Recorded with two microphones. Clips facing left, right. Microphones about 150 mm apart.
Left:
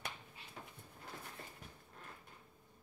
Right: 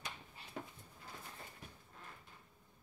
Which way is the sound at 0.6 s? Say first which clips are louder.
Right 6 dB; 70° right (ahead or behind).